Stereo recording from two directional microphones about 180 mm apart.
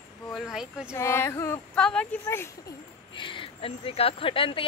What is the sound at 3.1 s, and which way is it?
Speech, 30° left (ahead or behind).